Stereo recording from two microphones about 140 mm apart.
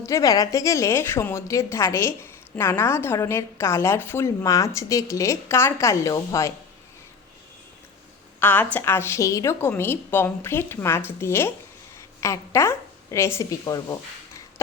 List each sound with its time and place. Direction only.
0.0 s a woman's voice: 25° left (ahead or behind)
8.4 s a woman's voice: 15° left (ahead or behind)